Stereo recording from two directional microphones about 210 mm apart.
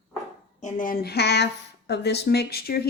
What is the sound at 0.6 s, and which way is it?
A woman's voice, 40° left (ahead or behind).